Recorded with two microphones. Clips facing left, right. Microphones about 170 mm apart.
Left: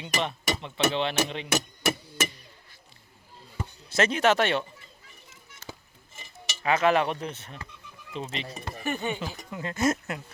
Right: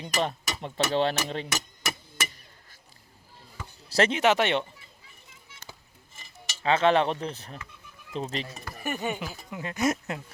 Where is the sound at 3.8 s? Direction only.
35° right (ahead or behind).